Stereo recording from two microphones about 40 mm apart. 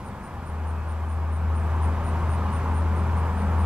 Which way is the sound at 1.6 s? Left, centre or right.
Right.